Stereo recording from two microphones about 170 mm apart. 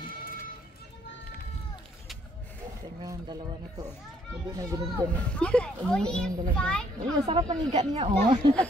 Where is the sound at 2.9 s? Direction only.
25° right (ahead or behind).